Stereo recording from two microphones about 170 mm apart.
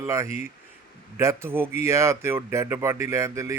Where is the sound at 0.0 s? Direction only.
15° right (ahead or behind).